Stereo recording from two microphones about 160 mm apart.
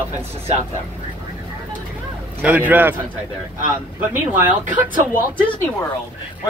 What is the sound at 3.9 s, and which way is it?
Speech, 10° right (ahead or behind).